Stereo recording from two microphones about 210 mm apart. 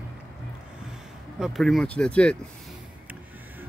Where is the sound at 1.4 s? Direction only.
Centre (ahead or behind).